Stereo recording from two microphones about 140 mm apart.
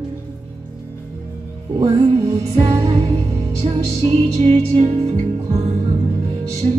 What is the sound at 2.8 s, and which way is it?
Music, 50° right (ahead or behind).